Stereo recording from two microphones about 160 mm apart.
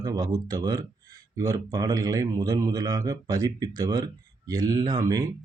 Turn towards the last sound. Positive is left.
turn(degrees=-25)  # may be behind; listen again after turning